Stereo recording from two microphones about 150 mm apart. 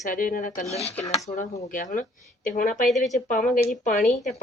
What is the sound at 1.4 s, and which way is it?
Speech, 60° left (ahead or behind).